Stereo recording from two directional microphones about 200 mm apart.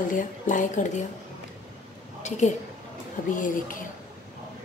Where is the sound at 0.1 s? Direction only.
40° left (ahead or behind).